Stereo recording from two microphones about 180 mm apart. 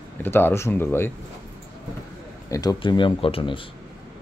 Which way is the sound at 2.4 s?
20° left (ahead or behind).